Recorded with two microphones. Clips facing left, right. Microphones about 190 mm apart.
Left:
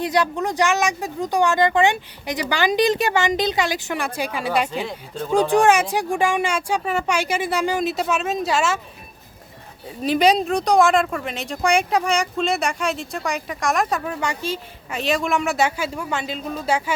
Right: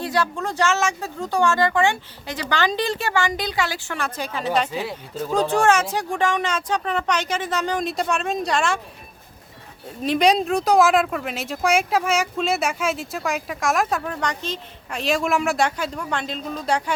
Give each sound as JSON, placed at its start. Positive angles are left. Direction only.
{"t": 0.0, "sound": "speech", "side_deg": 20}
{"t": 4.7, "sound": "speech", "side_deg": -5}
{"t": 5.3, "sound": "speech", "side_deg": 15}
{"t": 10.0, "sound": "speech", "side_deg": 0}